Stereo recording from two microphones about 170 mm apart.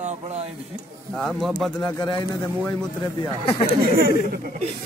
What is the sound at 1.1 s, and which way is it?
Speech, centre (ahead or behind).